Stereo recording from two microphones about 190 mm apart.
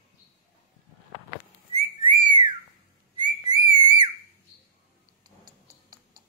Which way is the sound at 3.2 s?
20° right (ahead or behind).